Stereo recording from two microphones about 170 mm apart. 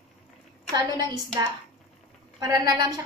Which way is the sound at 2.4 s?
20° right (ahead or behind).